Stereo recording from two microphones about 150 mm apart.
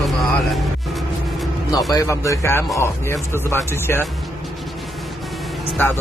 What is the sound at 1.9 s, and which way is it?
Speech, 20° left (ahead or behind).